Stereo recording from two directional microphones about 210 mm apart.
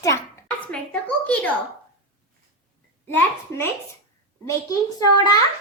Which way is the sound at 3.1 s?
10° left (ahead or behind).